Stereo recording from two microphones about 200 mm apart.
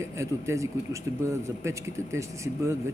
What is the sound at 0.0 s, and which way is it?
Speech, 15° right (ahead or behind).